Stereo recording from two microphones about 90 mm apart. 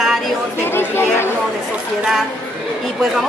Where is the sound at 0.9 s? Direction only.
25° left (ahead or behind).